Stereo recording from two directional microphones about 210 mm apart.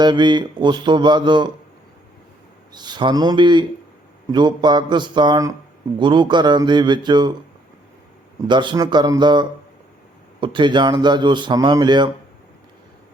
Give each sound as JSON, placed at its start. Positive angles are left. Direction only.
{"t": 0.0, "sound": "speech", "side_deg": -20}
{"t": 2.7, "sound": "speech", "side_deg": -20}
{"t": 8.4, "sound": "speech", "side_deg": -20}